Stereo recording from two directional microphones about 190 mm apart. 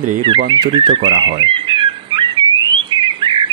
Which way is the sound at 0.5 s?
25° right (ahead or behind).